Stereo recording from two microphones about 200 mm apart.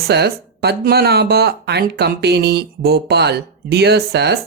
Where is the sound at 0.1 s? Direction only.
55° right (ahead or behind).